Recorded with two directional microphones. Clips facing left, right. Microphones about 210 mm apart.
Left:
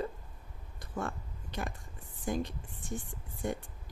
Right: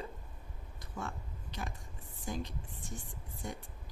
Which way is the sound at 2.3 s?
55° left (ahead or behind).